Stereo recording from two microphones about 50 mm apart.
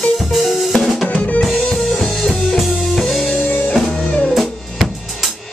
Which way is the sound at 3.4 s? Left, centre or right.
Left.